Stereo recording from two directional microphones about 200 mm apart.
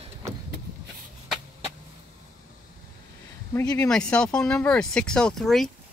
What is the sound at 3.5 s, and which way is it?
Speech, 15° left (ahead or behind).